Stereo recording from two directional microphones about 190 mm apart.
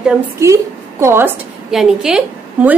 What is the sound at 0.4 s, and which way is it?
Speech, 15° right (ahead or behind).